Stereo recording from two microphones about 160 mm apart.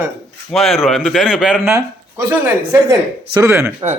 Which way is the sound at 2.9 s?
20° right (ahead or behind).